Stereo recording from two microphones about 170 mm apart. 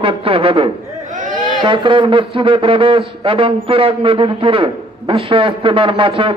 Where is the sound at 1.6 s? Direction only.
30° right (ahead or behind).